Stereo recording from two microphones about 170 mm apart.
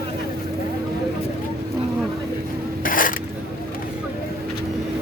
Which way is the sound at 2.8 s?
55° left (ahead or behind).